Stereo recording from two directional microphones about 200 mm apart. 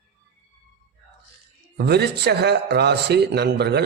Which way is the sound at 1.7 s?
55° right (ahead or behind).